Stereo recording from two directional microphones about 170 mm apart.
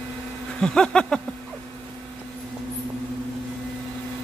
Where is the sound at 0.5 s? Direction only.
5° left (ahead or behind).